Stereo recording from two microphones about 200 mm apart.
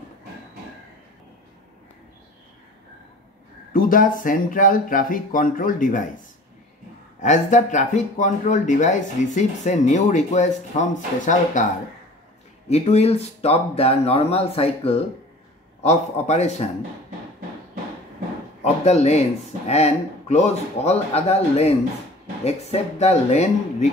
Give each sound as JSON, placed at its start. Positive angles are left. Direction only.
{"t": 3.7, "sound": "speech", "side_deg": 45}
{"t": 7.2, "sound": "speech", "side_deg": 35}
{"t": 12.6, "sound": "speech", "side_deg": 30}
{"t": 18.6, "sound": "speech", "side_deg": 30}